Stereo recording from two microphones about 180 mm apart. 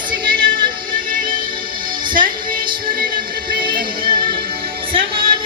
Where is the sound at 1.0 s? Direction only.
50° right (ahead or behind).